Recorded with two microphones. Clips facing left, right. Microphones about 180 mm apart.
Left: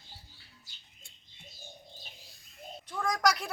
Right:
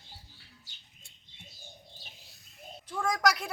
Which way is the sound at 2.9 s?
5° right (ahead or behind).